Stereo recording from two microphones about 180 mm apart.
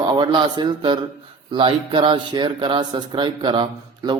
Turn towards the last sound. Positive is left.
turn(degrees=-25)  # may be behind; listen again after turning